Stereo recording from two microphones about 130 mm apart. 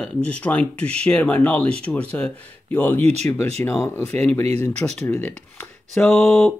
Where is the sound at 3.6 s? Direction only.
15° left (ahead or behind).